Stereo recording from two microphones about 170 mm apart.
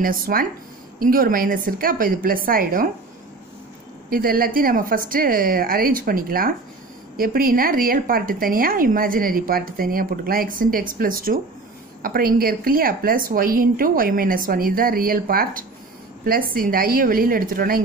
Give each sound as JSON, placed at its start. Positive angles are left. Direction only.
{"t": 0.0, "sound": "a woman's voice", "side_deg": -60}
{"t": 4.1, "sound": "a woman's voice", "side_deg": -60}